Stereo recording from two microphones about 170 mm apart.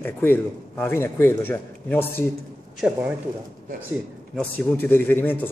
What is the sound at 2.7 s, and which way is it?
Speech, 5° right (ahead or behind).